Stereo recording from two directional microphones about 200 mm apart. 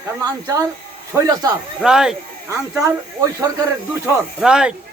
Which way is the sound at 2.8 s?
15° right (ahead or behind).